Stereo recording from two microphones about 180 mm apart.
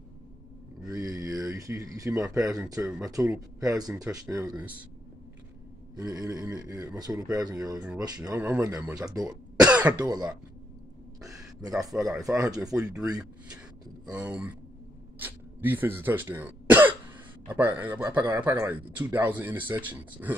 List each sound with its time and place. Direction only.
0.8 s a sound: 20° right (ahead or behind)
2.2 s speech: 20° right (ahead or behind)
6.1 s speech: 20° right (ahead or behind)
8.2 s speech: 10° right (ahead or behind)
9.7 s speech: 5° right (ahead or behind)
9.9 s speech: 20° right (ahead or behind)
12.1 s speech: 5° right (ahead or behind)